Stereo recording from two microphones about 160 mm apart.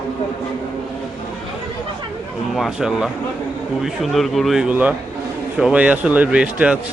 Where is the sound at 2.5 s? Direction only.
Centre (ahead or behind).